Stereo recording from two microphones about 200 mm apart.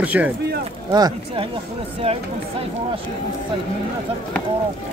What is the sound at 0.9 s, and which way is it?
Speech, 20° right (ahead or behind).